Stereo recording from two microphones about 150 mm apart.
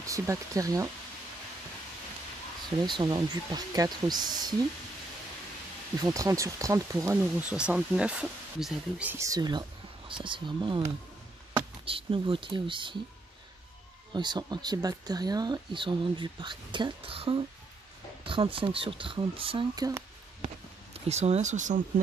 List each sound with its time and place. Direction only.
0.0 s speech: 20° right (ahead or behind)
2.8 s speech: 30° right (ahead or behind)
5.9 s speech: 20° right (ahead or behind)
7.3 s speech: 10° right (ahead or behind)
9.2 s speech: 25° right (ahead or behind)
11.8 s speech: 35° right (ahead or behind)
14.1 s speech: 30° right (ahead or behind)
19.7 s speech: 25° right (ahead or behind)
20.4 s speech: 45° right (ahead or behind)